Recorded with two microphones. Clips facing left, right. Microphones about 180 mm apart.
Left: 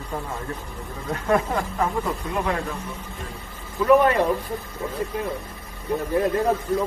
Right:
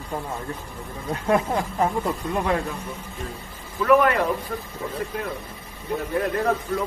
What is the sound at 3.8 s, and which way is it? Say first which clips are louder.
Speech: left 1 dB; 20° left (ahead or behind).